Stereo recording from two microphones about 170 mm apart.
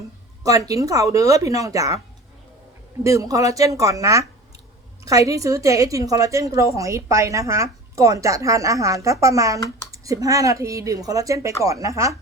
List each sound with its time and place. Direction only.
0.4 s a woman's voice: 20° right (ahead or behind)
3.0 s a woman's voice: 20° right (ahead or behind)